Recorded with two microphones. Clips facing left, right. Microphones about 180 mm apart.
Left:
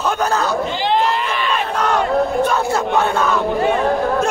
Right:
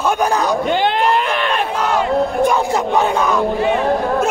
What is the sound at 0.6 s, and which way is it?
Speech, 60° right (ahead or behind).